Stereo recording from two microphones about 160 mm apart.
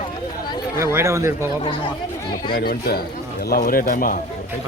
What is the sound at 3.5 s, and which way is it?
Speech, 60° left (ahead or behind).